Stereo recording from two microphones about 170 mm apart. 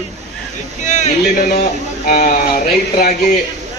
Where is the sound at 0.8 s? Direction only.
45° left (ahead or behind).